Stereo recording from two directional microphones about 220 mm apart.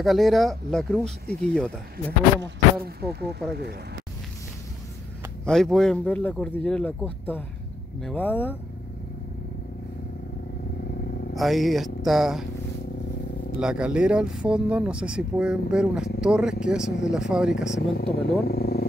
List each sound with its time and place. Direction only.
0.0 s speech: centre (ahead or behind)
2.4 s speech: 45° right (ahead or behind)
5.4 s speech: centre (ahead or behind)
11.3 s speech: centre (ahead or behind)
13.6 s speech: 5° right (ahead or behind)
17.6 s speech: 50° left (ahead or behind)